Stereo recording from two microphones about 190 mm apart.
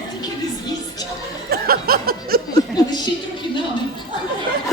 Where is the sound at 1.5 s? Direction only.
50° right (ahead or behind).